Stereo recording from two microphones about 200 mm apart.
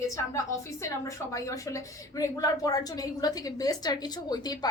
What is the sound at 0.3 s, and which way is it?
A woman's voice, 15° left (ahead or behind).